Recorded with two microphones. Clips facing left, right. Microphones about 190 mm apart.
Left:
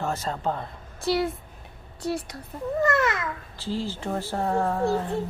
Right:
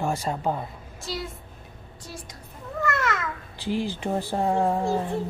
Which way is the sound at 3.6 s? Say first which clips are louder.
Right 3 dB; 15° right (ahead or behind).